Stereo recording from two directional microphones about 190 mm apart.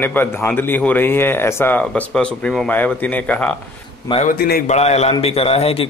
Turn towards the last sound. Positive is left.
turn(degrees=30)  # may be behind; listen again after turning